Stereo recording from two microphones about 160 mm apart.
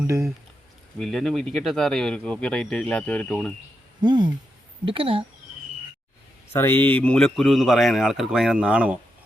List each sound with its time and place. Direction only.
0.9 s speech: centre (ahead or behind)
4.0 s speech: 25° right (ahead or behind)
6.5 s speech: 15° left (ahead or behind); by 9.0 s 5° right (ahead or behind)